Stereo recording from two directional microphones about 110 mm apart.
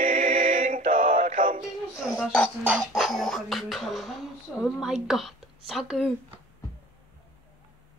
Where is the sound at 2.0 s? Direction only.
Centre (ahead or behind).